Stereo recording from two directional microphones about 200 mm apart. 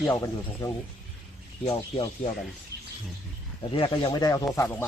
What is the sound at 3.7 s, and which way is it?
Speech, 25° left (ahead or behind).